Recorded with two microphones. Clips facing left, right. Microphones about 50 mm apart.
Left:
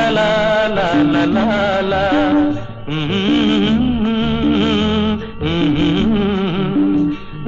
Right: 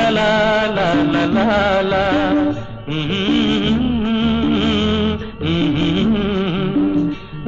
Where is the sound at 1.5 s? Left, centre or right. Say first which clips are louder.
Right 1 dB; right.